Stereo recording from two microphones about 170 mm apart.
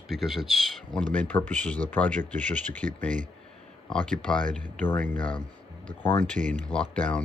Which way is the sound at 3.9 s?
5° left (ahead or behind).